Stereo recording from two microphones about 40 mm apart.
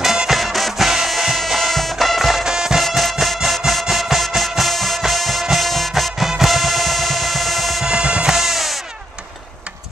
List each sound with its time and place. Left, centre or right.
0.0 s music: centre
2.4 s music: centre
2.8 s music: centre
7.8 s music: right
8.3 s music: centre